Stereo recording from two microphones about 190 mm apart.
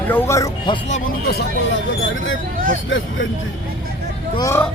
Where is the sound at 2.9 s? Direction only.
80° left.